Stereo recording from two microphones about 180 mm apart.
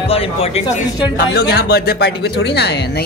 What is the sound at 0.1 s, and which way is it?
Speech, 30° left (ahead or behind).